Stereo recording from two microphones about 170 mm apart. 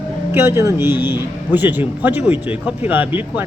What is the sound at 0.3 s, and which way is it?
A man's voice, 15° right (ahead or behind).